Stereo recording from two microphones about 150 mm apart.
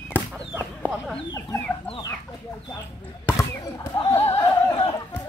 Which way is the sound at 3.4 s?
15° left (ahead or behind).